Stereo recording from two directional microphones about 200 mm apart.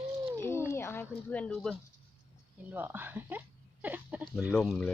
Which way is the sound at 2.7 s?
10° right (ahead or behind).